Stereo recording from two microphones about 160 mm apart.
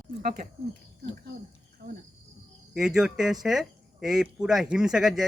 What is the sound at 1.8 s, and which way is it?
Speech, 90° right.